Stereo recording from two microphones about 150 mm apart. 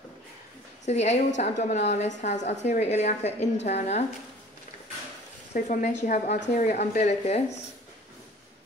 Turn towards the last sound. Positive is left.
turn(degrees=50)  # may be behind; listen again after turning